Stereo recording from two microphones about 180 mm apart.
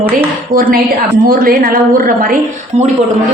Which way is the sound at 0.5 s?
50° right (ahead or behind).